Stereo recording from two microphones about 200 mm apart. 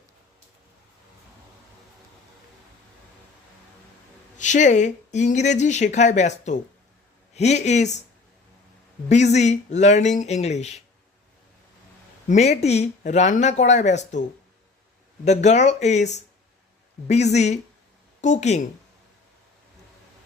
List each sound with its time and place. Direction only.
4.4 s speech: 40° left (ahead or behind)
9.0 s speech: 35° left (ahead or behind)
12.3 s speech: 35° left (ahead or behind)